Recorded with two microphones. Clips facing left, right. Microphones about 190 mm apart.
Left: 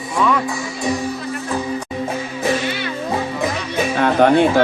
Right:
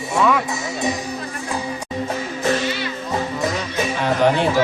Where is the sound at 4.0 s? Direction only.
55° left (ahead or behind).